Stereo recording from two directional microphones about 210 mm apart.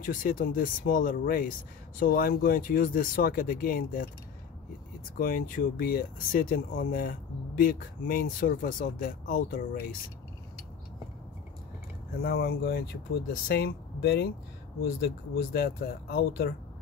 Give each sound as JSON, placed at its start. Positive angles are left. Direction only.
{"t": 0.0, "sound": "speech", "side_deg": 40}
{"t": 5.1, "sound": "speech", "side_deg": 45}
{"t": 12.2, "sound": "speech", "side_deg": 45}